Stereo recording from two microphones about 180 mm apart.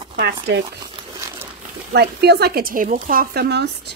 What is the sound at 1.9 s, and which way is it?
Speech, 65° right (ahead or behind).